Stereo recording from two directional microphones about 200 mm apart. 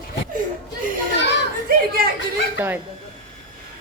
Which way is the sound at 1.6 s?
50° right (ahead or behind).